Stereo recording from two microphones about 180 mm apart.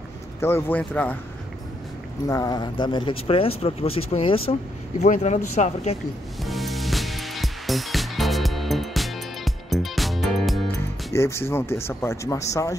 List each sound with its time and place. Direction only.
0.4 s speech: 15° left (ahead or behind)
2.2 s speech: 20° left (ahead or behind); by 5.9 s 40° left (ahead or behind)
6.4 s music: centre (ahead or behind)
10.7 s speech: 15° left (ahead or behind)